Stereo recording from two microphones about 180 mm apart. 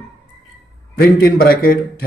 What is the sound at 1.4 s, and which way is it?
Speech, 55° left (ahead or behind).